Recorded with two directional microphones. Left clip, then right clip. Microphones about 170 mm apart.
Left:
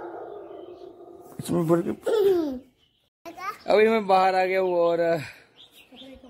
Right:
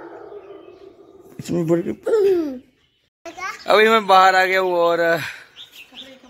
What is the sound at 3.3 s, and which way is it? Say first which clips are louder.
Children playing: right 5 dB; 55° left (ahead or behind).